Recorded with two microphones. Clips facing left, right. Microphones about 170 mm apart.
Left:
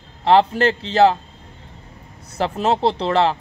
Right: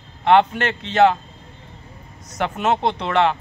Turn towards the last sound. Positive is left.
turn(degrees=30)  # may be behind; listen again after turning